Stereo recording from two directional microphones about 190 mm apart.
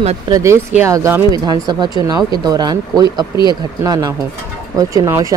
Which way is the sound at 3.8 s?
15° right (ahead or behind).